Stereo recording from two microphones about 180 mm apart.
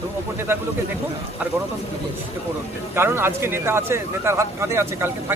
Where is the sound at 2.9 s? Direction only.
15° right (ahead or behind).